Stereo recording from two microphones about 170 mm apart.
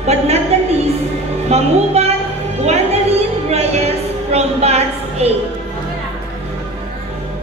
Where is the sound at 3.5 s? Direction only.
40° right (ahead or behind).